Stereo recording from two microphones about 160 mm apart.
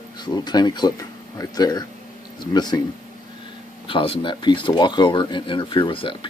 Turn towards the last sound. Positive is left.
turn(degrees=35)  # may be behind; listen again after turning